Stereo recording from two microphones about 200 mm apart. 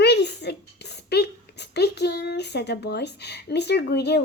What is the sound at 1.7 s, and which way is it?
A woman's voice, 55° left (ahead or behind).